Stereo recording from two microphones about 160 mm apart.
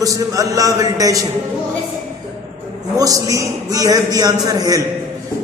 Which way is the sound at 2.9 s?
20° right (ahead or behind).